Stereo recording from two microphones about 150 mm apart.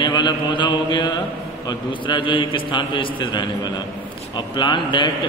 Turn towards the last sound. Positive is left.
turn(degrees=30)  # may be behind; listen again after turning